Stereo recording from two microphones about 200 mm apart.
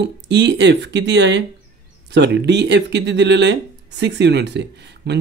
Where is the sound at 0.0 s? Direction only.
60° right (ahead or behind).